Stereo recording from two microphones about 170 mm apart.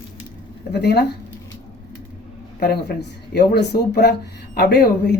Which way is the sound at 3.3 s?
70° left (ahead or behind).